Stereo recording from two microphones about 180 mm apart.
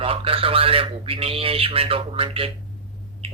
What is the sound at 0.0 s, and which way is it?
A man's voice, 30° right (ahead or behind).